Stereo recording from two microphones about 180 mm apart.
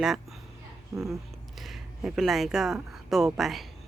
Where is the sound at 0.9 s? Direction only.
15° right (ahead or behind).